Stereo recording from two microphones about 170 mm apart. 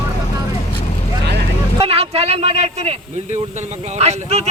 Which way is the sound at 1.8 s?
35° right (ahead or behind).